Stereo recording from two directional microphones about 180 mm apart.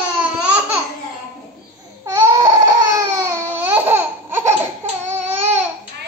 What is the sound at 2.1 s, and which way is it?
Baby cry, 15° right (ahead or behind).